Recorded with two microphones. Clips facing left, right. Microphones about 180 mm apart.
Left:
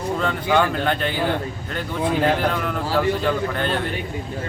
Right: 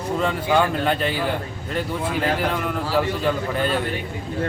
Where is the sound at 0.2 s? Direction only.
5° right (ahead or behind).